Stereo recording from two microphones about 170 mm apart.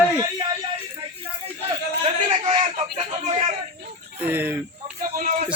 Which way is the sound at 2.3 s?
35° right (ahead or behind).